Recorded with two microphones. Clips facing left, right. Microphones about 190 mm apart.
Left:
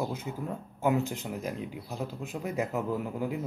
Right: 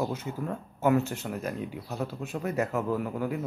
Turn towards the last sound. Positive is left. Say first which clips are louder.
# right 2 dB
turn(degrees=15)  # may be behind; listen again after turning